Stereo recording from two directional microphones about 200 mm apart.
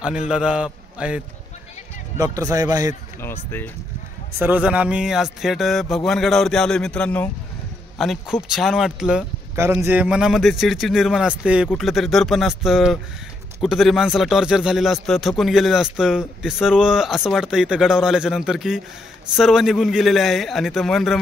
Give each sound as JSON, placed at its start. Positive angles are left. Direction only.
{"t": 0.3, "sound": "a man's voice", "side_deg": -5}
{"t": 2.1, "sound": "a man's voice", "side_deg": -15}
{"t": 3.2, "sound": "speech", "side_deg": 10}
{"t": 4.4, "sound": "a man's voice", "side_deg": -10}